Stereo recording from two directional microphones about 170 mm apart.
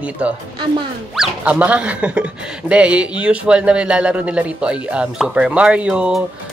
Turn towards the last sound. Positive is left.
turn(degrees=-5)  # may be behind; listen again after turning